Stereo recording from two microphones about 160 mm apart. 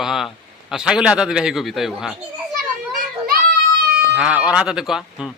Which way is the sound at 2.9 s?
60° right (ahead or behind).